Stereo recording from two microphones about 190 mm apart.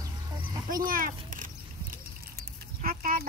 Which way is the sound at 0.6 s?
45° right (ahead or behind).